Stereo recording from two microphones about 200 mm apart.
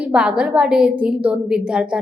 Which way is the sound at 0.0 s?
5° right (ahead or behind).